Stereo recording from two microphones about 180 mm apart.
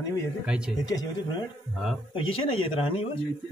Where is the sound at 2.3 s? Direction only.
30° left (ahead or behind).